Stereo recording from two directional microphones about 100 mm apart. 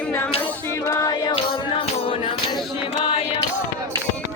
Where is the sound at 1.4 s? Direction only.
85° left.